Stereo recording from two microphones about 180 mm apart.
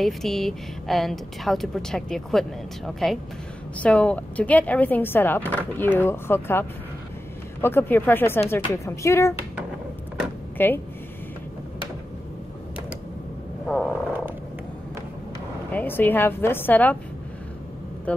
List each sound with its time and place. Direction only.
0.0 s a woman's voice: centre (ahead or behind)
7.6 s speech: 10° left (ahead or behind)
10.6 s speech: 10° left (ahead or behind)
13.7 s frog: 5° left (ahead or behind)
15.7 s speech: 10° left (ahead or behind)
18.1 s speech: 10° left (ahead or behind)